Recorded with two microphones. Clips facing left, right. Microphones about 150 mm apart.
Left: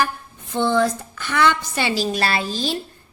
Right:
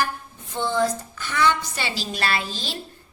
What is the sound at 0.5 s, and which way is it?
A woman's voice, 65° left (ahead or behind).